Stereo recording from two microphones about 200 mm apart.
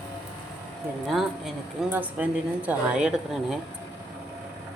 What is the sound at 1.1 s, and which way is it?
Speech, centre (ahead or behind).